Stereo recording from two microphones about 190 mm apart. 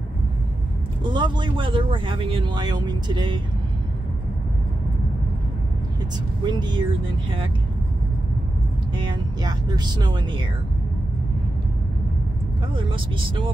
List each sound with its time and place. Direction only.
1.0 s speech: 25° right (ahead or behind)
6.4 s speech: 25° right (ahead or behind)
8.9 s speech: 20° right (ahead or behind)
12.7 s speech: 25° right (ahead or behind)